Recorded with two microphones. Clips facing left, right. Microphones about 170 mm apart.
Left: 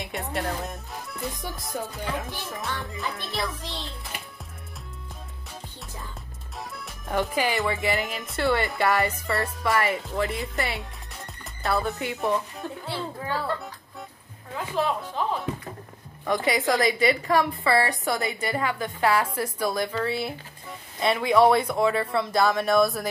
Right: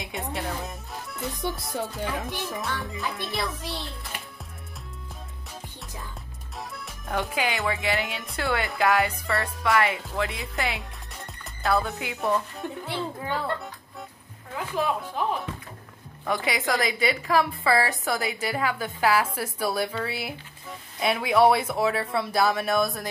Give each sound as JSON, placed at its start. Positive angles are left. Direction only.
{"t": 0.0, "sound": "music", "side_deg": 0}
{"t": 1.4, "sound": "speech", "side_deg": 0}
{"t": 6.6, "sound": "speech", "side_deg": 0}
{"t": 12.8, "sound": "music", "side_deg": -20}
{"t": 16.3, "sound": "speech", "side_deg": 0}